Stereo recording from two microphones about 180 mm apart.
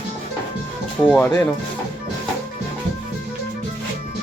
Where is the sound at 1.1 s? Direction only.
10° left (ahead or behind).